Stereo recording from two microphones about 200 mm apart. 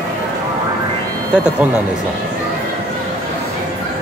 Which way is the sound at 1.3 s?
5° right (ahead or behind).